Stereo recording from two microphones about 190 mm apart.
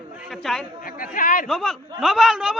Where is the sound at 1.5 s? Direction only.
Centre (ahead or behind).